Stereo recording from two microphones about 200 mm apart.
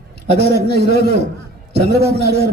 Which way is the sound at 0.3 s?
55° left (ahead or behind).